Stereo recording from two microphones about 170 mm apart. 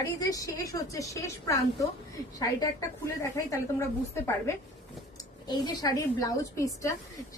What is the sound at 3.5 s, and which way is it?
A woman's voice, 15° left (ahead or behind).